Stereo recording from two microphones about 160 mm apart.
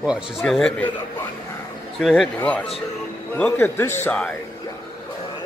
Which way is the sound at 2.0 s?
Centre (ahead or behind).